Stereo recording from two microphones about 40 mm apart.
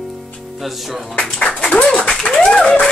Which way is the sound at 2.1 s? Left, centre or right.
Centre.